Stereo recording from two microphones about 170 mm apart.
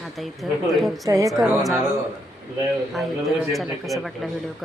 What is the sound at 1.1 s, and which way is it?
Speech, 20° right (ahead or behind).